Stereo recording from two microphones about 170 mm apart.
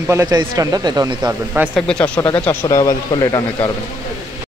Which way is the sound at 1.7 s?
5° left (ahead or behind).